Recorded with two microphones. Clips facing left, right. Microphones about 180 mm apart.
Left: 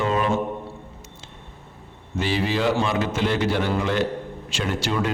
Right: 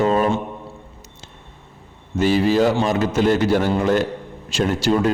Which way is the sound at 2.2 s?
45° right (ahead or behind).